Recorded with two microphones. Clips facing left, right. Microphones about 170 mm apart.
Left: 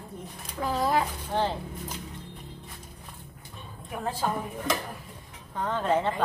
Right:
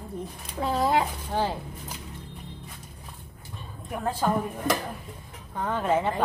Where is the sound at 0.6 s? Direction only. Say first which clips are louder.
Right 2 dB; 25° right (ahead or behind).